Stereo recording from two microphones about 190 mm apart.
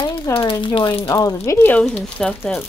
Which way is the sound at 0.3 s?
25° left (ahead or behind).